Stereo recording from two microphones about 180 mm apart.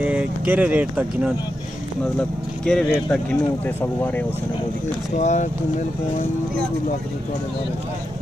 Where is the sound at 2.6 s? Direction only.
5° left (ahead or behind).